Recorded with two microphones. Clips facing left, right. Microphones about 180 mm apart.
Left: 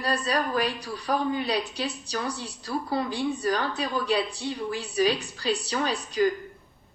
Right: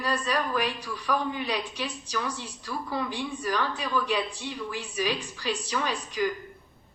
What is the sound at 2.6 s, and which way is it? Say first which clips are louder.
Speech: left 4 dB; 35° left (ahead or behind).